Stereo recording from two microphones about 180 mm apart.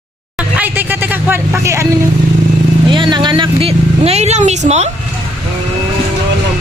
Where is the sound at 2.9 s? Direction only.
25° right (ahead or behind).